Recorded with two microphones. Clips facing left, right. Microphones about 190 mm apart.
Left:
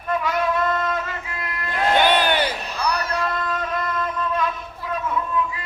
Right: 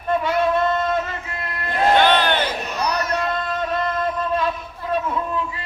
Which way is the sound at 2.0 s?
10° left (ahead or behind).